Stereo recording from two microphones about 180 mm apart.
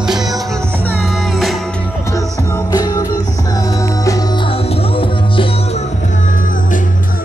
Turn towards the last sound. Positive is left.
turn(degrees=30)  # may be behind; listen again after turning